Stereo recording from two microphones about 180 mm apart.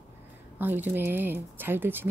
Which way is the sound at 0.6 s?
10° right (ahead or behind).